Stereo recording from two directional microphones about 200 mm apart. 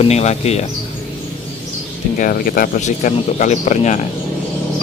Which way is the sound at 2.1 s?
45° left (ahead or behind).